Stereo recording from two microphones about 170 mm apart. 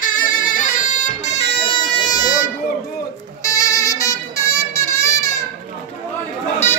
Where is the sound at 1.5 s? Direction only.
30° left (ahead or behind).